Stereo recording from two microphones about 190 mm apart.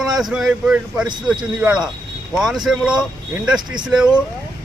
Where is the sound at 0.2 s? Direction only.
Centre (ahead or behind).